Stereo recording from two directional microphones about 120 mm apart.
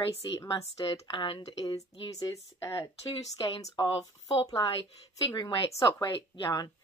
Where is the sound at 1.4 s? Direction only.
30° left (ahead or behind).